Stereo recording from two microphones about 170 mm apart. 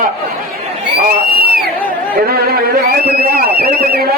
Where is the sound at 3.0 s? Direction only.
65° right (ahead or behind).